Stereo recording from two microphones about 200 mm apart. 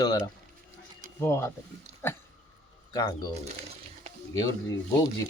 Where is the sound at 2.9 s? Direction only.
20° left (ahead or behind).